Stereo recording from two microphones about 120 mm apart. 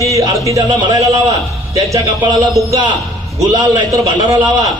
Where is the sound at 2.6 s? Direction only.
25° right (ahead or behind).